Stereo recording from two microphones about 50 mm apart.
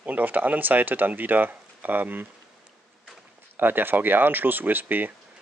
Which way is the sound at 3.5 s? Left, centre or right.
Right.